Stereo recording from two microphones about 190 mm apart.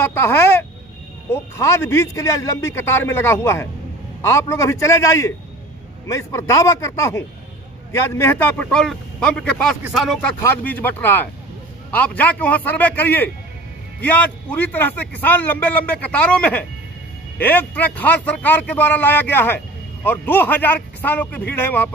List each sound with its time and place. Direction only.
0.0 s speech: 10° left (ahead or behind)